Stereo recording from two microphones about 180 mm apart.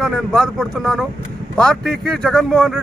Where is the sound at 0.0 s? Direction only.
Centre (ahead or behind).